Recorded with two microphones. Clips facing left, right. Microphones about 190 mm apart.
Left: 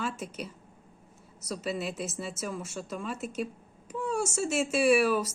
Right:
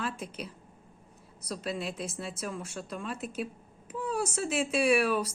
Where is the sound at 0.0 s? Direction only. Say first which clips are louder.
Left 1 dB; centre (ahead or behind).